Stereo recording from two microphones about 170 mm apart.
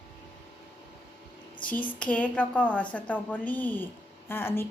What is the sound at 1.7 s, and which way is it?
A woman's voice, 10° left (ahead or behind).